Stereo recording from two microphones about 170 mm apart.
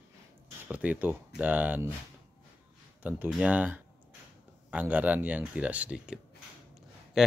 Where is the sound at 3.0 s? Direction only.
10° right (ahead or behind).